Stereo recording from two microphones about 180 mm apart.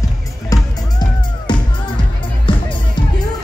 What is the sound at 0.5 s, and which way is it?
Music, 20° left (ahead or behind).